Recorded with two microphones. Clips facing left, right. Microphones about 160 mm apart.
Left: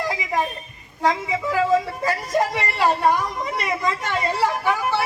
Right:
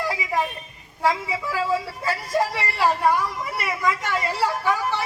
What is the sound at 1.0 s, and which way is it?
A woman's voice, 20° left (ahead or behind).